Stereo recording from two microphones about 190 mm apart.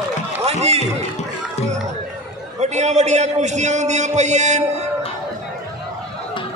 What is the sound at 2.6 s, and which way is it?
A man's voice, 35° right (ahead or behind).